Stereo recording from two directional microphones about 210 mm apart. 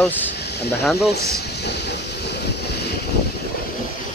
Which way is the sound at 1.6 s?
55° left (ahead or behind).